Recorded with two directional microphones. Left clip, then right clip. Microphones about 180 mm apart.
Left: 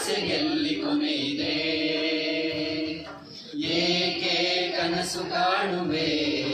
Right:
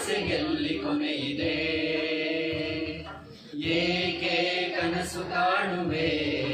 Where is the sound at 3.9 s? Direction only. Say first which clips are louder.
Left 3 dB; 20° right (ahead or behind).